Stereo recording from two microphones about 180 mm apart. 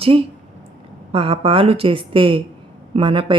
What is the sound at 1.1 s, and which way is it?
Speech, 30° right (ahead or behind).